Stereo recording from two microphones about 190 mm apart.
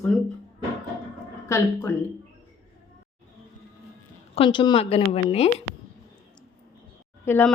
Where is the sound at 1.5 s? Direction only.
15° left (ahead or behind).